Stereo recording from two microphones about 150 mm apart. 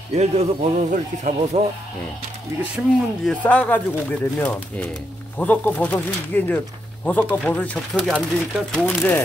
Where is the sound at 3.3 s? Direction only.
10° left (ahead or behind).